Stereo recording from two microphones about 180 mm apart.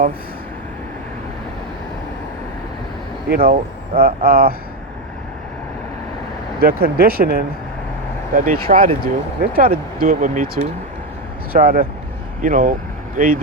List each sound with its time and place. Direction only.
3.2 s speech: 55° right (ahead or behind)
6.6 s speech: 55° right (ahead or behind)
8.4 s speech: 50° right (ahead or behind)
11.5 s speech: 55° right (ahead or behind)